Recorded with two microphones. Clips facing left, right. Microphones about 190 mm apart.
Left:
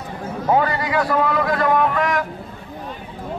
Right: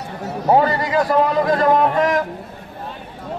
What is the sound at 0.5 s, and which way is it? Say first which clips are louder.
Speech: right 3 dB; 35° right (ahead or behind).